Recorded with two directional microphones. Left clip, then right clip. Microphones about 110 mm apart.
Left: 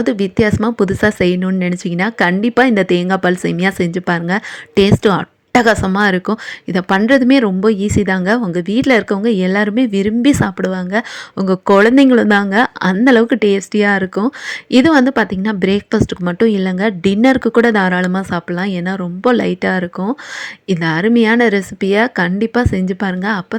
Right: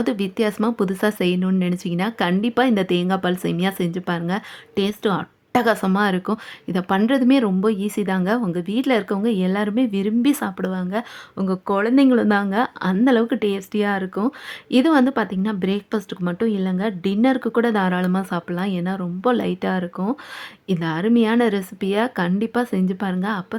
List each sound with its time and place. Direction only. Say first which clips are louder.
0.0 s a woman's voice: left 7 dB; 25° left (ahead or behind)